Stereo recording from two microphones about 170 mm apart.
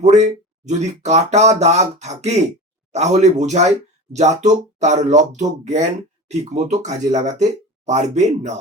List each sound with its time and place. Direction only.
0.0 s speech: 45° right (ahead or behind)